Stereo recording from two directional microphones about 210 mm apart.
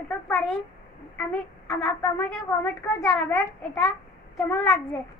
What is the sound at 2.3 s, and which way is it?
A woman's voice, 5° left (ahead or behind).